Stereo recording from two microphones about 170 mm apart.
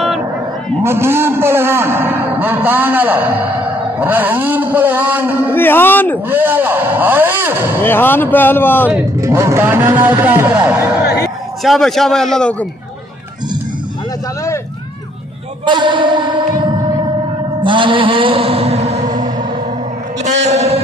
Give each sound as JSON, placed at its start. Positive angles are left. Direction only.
{"t": 0.8, "sound": "a man's voice", "side_deg": -15}
{"t": 5.5, "sound": "speech", "side_deg": 10}
{"t": 6.2, "sound": "a man's voice", "side_deg": -10}
{"t": 7.8, "sound": "speech", "side_deg": 10}
{"t": 9.2, "sound": "a man's voice", "side_deg": -15}
{"t": 15.6, "sound": "music", "side_deg": -30}
{"t": 17.6, "sound": "a sound", "side_deg": -30}
{"t": 20.2, "sound": "a man's voice", "side_deg": -40}